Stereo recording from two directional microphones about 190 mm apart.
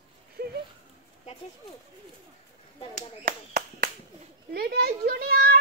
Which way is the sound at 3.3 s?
50° right (ahead or behind).